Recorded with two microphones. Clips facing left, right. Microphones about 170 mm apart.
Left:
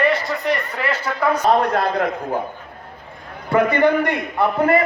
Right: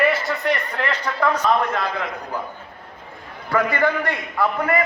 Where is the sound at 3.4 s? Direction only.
20° left (ahead or behind).